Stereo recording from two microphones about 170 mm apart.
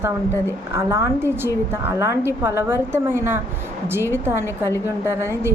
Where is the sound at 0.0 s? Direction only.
15° right (ahead or behind).